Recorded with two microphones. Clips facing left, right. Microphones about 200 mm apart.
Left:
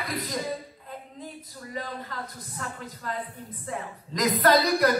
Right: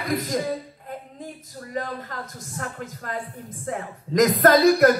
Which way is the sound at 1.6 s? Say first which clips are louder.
Right 5 dB; 50° right (ahead or behind).